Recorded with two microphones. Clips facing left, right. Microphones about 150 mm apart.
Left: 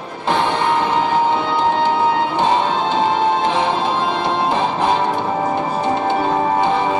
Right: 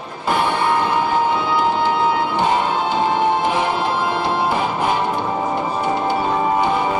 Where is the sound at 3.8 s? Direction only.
20° left (ahead or behind).